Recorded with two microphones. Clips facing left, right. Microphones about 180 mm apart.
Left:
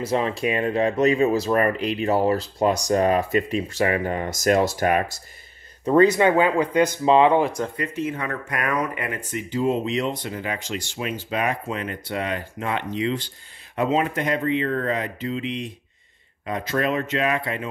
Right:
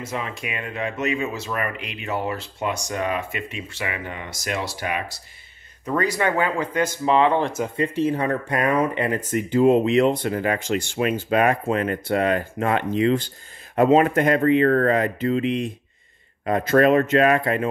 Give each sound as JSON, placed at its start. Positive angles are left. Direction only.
{"t": 0.0, "sound": "speech", "side_deg": 35}
{"t": 5.9, "sound": "speech", "side_deg": 25}
{"t": 7.7, "sound": "speech", "side_deg": -30}